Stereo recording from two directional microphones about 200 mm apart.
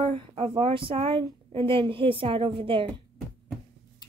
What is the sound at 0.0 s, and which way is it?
Speech, 30° right (ahead or behind).